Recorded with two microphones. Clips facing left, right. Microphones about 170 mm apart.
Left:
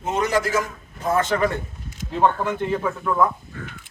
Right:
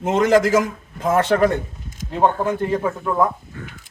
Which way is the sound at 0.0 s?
90° right.